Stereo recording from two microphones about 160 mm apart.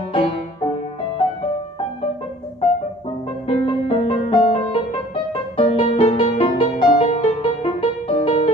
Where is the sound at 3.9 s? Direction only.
35° left (ahead or behind).